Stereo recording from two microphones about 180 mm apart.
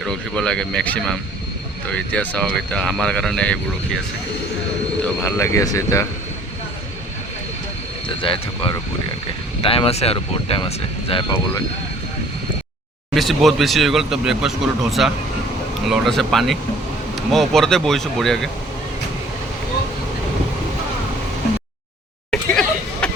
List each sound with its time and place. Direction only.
0.0 s speech: 5° left (ahead or behind)
5.0 s speech: 15° left (ahead or behind)
8.2 s speech: 30° left (ahead or behind)
13.1 s speech: centre (ahead or behind)
22.3 s hubbub: 5° left (ahead or behind)